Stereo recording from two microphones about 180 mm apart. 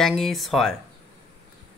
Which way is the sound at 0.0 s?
Centre (ahead or behind).